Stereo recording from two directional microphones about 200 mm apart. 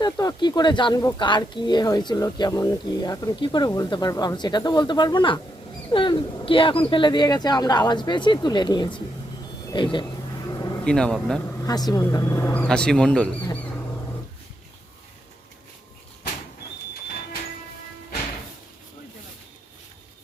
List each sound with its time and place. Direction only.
0.0 s speech: 20° left (ahead or behind)
10.5 s a sound: 20° left (ahead or behind)
10.8 s speech: 5° left (ahead or behind)
11.6 s speech: 20° left (ahead or behind); by 13.6 s 5° left (ahead or behind)